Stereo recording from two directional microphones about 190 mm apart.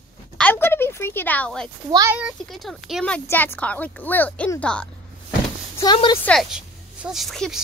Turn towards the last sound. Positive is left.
turn(degrees=0)  # may be behind; listen again after turning